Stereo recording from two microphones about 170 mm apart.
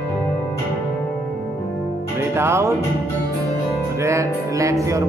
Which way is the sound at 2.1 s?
15° right (ahead or behind).